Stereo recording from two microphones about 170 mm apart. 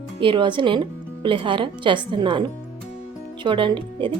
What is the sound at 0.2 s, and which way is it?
A woman's voice, 30° right (ahead or behind).